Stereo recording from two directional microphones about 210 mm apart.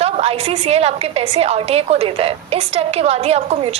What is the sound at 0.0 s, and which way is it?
A woman's voice, 30° right (ahead or behind).